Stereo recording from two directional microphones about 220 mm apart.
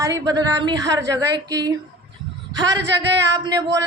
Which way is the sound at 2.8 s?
50° right (ahead or behind).